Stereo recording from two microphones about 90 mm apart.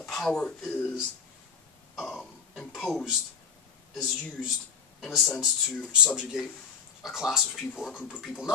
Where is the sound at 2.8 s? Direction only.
5° left (ahead or behind).